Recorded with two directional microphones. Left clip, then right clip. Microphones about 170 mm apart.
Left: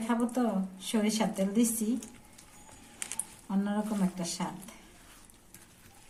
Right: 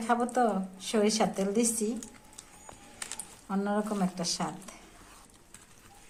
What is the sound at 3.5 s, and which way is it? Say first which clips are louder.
Speech: right 3 dB; 40° right (ahead or behind).